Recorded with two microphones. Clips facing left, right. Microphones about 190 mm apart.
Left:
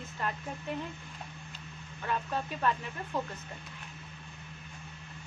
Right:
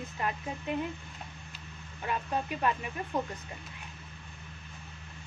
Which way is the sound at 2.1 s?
15° right (ahead or behind).